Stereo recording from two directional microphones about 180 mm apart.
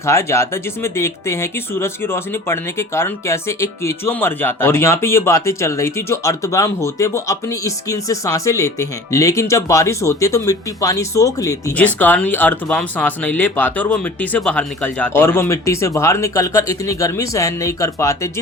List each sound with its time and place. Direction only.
0.0 s speech: 15° left (ahead or behind)